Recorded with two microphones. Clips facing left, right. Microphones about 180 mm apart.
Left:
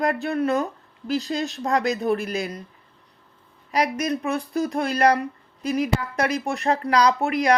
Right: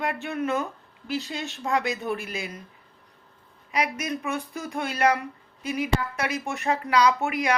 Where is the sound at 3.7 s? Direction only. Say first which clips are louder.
Left 5 dB; 35° left (ahead or behind).